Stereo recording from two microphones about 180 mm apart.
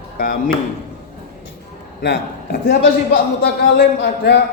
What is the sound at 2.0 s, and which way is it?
A man's voice, 70° left (ahead or behind).